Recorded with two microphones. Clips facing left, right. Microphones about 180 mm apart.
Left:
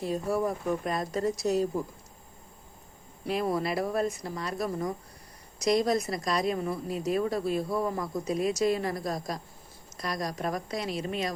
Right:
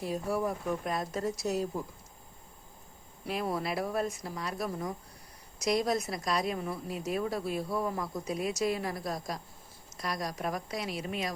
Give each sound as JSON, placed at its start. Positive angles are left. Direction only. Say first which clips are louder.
{"t": 0.0, "sound": "a woman's voice", "louder": "left 3 dB", "side_deg": -5}
{"t": 3.2, "sound": "a woman's voice", "louder": "left 4 dB", "side_deg": 0}